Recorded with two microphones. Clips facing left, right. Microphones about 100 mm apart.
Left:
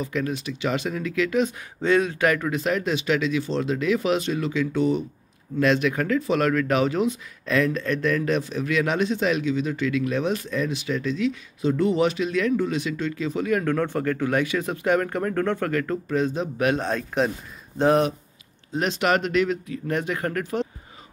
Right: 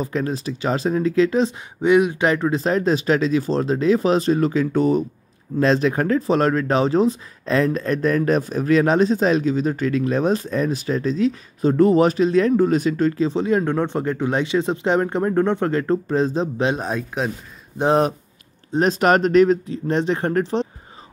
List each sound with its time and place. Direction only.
0.0 s speech: 35° right (ahead or behind)
1.8 s speech: 15° right (ahead or behind)
16.8 s speech: 5° right (ahead or behind)
18.7 s speech: 40° right (ahead or behind)